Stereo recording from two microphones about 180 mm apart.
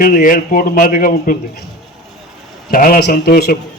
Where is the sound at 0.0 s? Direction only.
50° left (ahead or behind).